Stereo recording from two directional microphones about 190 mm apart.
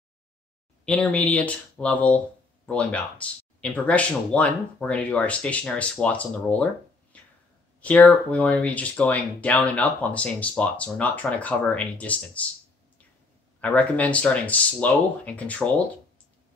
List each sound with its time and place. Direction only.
0.8 s speech: 5° left (ahead or behind)
13.6 s speech: 5° left (ahead or behind)